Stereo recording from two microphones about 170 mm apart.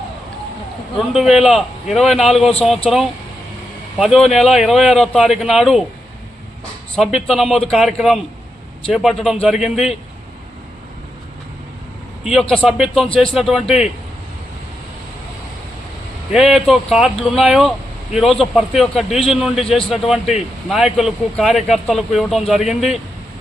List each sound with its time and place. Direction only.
0.9 s speech: centre (ahead or behind)
6.9 s speech: centre (ahead or behind)
12.2 s speech: centre (ahead or behind)
16.3 s speech: centre (ahead or behind)